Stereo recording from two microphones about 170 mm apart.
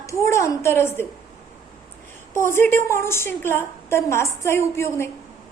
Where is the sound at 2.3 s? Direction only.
15° left (ahead or behind).